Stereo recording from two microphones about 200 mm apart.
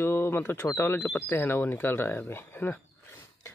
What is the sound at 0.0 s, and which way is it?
Speech, 10° left (ahead or behind).